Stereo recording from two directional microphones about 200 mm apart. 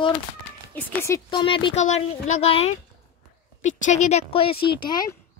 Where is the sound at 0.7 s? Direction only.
10° left (ahead or behind); by 4.6 s 30° left (ahead or behind).